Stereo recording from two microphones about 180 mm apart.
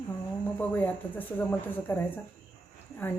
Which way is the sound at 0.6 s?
10° left (ahead or behind).